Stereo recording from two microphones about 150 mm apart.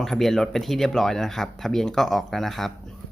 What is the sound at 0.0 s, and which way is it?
Speech, centre (ahead or behind).